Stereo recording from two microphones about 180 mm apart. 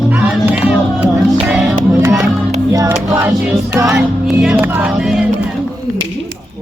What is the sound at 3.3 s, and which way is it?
Speech, 5° right (ahead or behind).